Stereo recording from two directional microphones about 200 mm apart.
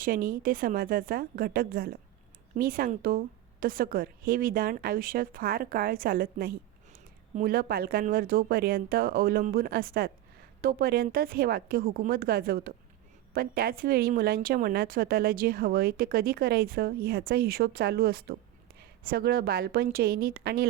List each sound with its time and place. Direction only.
0.0 s speech: 45° right (ahead or behind)